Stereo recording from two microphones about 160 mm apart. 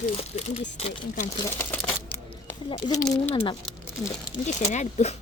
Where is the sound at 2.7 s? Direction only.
25° left (ahead or behind).